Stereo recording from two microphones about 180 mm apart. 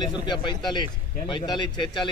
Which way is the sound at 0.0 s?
25° left (ahead or behind).